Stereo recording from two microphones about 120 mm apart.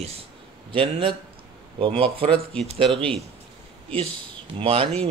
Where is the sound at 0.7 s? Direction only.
45° right (ahead or behind).